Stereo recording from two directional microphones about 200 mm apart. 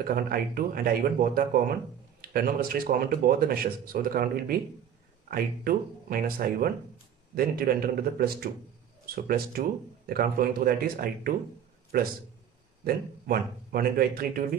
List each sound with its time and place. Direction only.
0.0 s speech: 45° right (ahead or behind)